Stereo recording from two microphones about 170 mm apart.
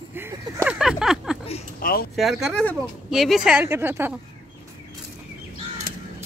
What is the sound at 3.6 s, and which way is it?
Speech, 15° right (ahead or behind).